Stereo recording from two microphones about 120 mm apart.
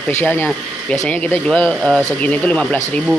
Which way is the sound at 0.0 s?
15° left (ahead or behind).